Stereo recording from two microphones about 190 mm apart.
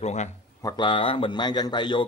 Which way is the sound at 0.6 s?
25° left (ahead or behind).